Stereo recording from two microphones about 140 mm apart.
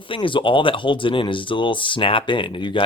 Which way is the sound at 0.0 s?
35° left (ahead or behind).